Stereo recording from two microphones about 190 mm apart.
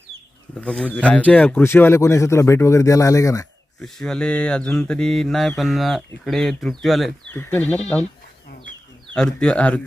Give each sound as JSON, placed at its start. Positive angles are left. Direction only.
{"t": 0.6, "sound": "speech", "side_deg": 5}
{"t": 3.8, "sound": "mantra", "side_deg": 0}
{"t": 7.3, "sound": "speech", "side_deg": 10}
{"t": 8.4, "sound": "chicken", "side_deg": 50}
{"t": 9.1, "sound": "mantra", "side_deg": 5}